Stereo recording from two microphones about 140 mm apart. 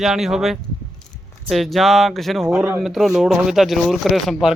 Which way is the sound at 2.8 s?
Centre (ahead or behind).